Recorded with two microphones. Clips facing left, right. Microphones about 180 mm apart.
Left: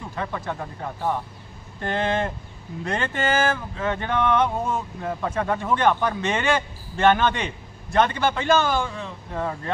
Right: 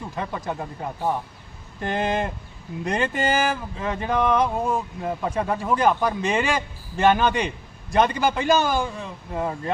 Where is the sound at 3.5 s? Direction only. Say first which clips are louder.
Left 1 dB; 5° right (ahead or behind).